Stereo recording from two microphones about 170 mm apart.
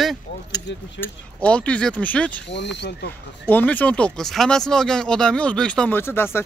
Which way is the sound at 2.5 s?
90° left.